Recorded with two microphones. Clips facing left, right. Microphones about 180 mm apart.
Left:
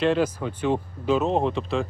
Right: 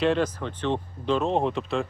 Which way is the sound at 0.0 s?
5° left (ahead or behind).